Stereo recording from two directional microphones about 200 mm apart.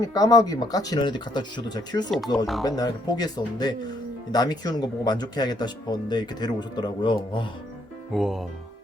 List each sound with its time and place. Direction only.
0.0 s speech: 20° left (ahead or behind)
2.0 s speech: centre (ahead or behind)
2.6 s speech: 20° left (ahead or behind)
8.1 s speech: centre (ahead or behind)